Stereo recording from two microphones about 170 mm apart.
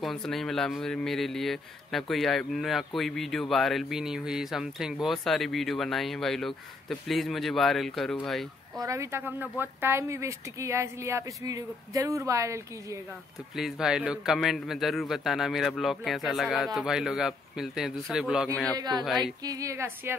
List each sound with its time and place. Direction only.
0.0 s speech: centre (ahead or behind)
8.7 s speech: 20° right (ahead or behind)
13.6 s speech: 5° right (ahead or behind)
18.5 s a man's voice: 5° left (ahead or behind)
18.8 s speech: 25° right (ahead or behind)